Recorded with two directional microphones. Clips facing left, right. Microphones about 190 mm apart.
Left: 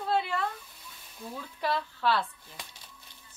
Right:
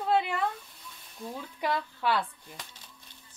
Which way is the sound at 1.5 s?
15° right (ahead or behind).